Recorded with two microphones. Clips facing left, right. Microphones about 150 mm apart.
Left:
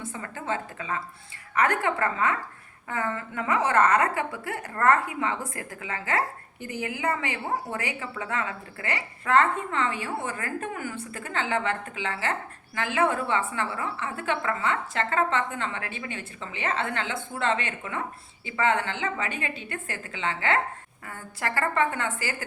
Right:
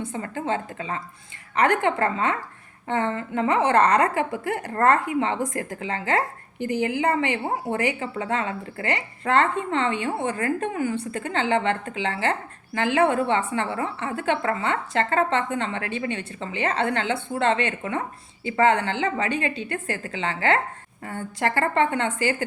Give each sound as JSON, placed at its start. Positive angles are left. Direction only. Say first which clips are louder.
{"t": 0.1, "sound": "a woman's voice", "louder": "right 3 dB", "side_deg": -30}